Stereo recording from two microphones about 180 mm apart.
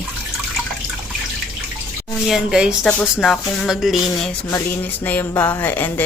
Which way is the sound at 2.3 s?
5° right (ahead or behind).